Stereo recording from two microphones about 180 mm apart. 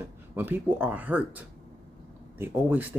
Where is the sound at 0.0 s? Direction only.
10° right (ahead or behind).